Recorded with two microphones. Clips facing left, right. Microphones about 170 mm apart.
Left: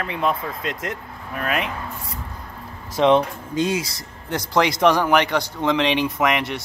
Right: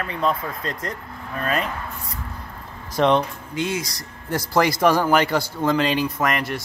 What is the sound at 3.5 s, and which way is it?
Speech, 15° left (ahead or behind).